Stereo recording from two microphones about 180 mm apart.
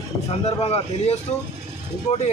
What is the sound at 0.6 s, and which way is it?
Speech, 35° left (ahead or behind).